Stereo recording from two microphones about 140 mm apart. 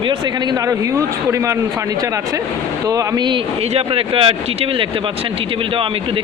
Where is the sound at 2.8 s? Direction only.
25° right (ahead or behind).